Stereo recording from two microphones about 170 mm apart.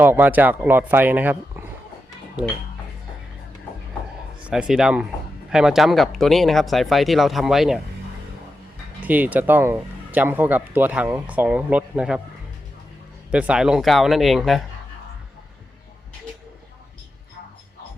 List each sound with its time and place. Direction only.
0.0 s speech: 10° right (ahead or behind)
4.4 s speech: 5° right (ahead or behind)
9.0 s speech: 10° right (ahead or behind)
13.3 s speech: 5° right (ahead or behind)